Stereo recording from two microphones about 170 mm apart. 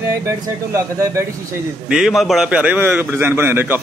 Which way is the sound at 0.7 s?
15° right (ahead or behind).